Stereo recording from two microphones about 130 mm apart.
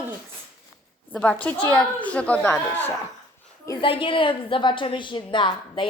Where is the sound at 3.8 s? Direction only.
40° left (ahead or behind).